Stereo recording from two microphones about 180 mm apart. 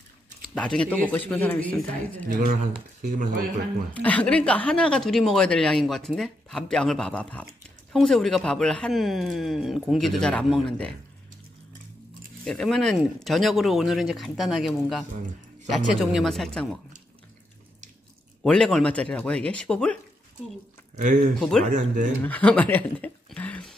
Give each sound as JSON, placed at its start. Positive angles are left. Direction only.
{"t": 0.6, "sound": "a man's voice", "side_deg": 5}
{"t": 2.2, "sound": "speech", "side_deg": -50}
{"t": 3.9, "sound": "speech", "side_deg": 10}
{"t": 12.4, "sound": "speech", "side_deg": 0}
{"t": 18.4, "sound": "speech", "side_deg": 0}
{"t": 20.9, "sound": "speech", "side_deg": -45}
{"t": 21.4, "sound": "speech", "side_deg": 0}
{"t": 22.2, "sound": "a sound", "side_deg": 10}